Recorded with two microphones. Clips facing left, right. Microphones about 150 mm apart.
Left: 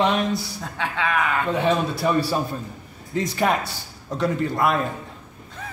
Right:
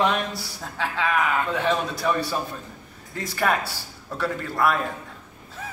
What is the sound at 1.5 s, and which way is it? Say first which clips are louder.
Speech: left 3 dB; 30° left (ahead or behind).